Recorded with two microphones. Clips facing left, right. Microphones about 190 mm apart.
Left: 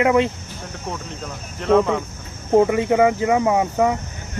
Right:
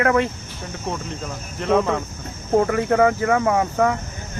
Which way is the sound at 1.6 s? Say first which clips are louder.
Left 2 dB; centre (ahead or behind).